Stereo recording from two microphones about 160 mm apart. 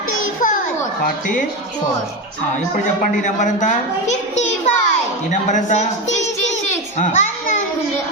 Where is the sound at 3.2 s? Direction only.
50° left (ahead or behind).